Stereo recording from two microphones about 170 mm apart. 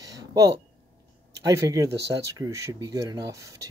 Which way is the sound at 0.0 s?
20° right (ahead or behind).